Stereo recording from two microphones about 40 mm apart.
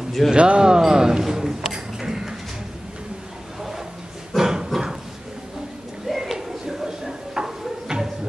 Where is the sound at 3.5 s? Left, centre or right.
Centre.